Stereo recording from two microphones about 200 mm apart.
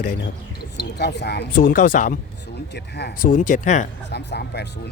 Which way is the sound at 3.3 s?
40° left (ahead or behind).